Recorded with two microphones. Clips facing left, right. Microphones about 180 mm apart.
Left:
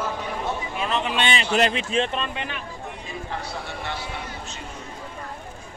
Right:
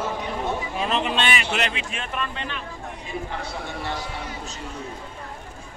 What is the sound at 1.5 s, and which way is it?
Speech, 35° left (ahead or behind).